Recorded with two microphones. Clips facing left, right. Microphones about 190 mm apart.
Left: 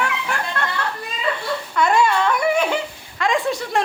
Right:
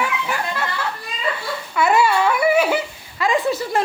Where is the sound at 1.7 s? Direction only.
5° right (ahead or behind).